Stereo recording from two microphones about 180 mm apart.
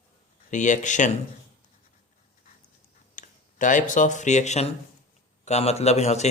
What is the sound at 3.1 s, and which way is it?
A man's voice, 45° left (ahead or behind).